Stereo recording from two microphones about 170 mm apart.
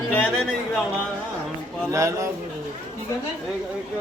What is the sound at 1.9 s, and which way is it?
Speech, 20° right (ahead or behind).